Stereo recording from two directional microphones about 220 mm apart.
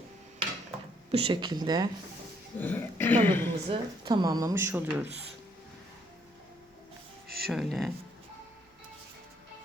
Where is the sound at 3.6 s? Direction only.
20° right (ahead or behind).